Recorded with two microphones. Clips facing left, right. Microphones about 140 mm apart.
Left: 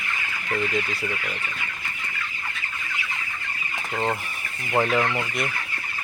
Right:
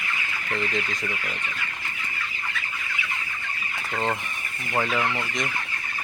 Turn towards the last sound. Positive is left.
turn(degrees=15)  # may be behind; listen again after turning